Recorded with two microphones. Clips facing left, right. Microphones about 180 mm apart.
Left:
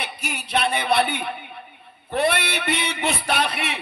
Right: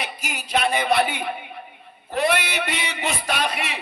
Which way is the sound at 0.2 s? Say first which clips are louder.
Even; 60° left (ahead or behind).